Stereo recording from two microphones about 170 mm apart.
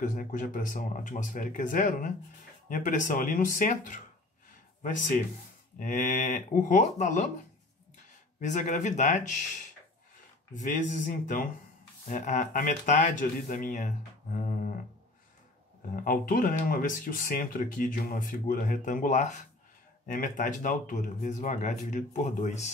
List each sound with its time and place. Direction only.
0.0 s speech: 50° left (ahead or behind)
5.8 s speech: 50° left (ahead or behind)
16.0 s speech: 55° left (ahead or behind)